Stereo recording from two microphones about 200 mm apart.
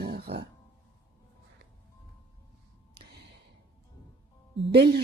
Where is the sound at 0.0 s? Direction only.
55° right (ahead or behind).